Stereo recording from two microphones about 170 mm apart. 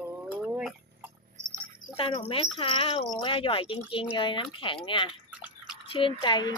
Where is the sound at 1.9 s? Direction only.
30° left (ahead or behind).